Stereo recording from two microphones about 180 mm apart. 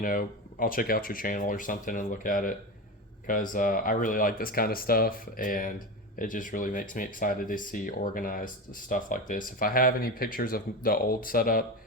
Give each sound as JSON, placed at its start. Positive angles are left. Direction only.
{"t": 0.0, "sound": "speech", "side_deg": 50}